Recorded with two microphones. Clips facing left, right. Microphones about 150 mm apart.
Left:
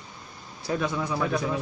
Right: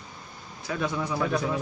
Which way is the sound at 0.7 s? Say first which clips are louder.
Left 3 dB; 35° left (ahead or behind).